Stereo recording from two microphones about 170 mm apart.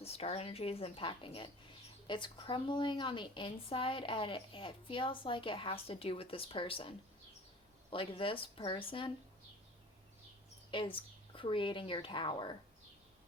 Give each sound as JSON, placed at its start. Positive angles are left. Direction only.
{"t": 0.0, "sound": "speech", "side_deg": 35}
{"t": 10.7, "sound": "speech", "side_deg": 30}